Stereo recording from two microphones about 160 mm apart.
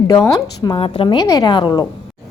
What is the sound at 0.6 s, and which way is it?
A woman's voice, 35° left (ahead or behind).